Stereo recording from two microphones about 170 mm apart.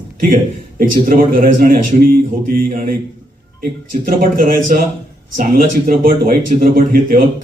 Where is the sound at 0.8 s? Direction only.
55° right (ahead or behind).